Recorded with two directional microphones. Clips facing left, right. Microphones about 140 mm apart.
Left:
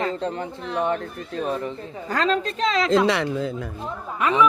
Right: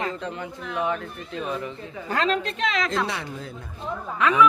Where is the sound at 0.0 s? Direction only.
35° left (ahead or behind).